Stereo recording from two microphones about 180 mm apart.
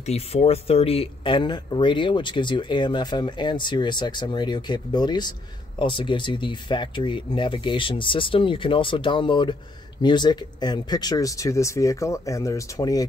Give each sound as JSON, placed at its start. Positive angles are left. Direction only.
{"t": 0.0, "sound": "speech", "side_deg": 35}